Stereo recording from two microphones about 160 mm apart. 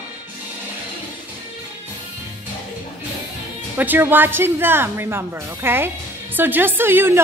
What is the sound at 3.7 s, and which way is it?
Speech, 10° right (ahead or behind).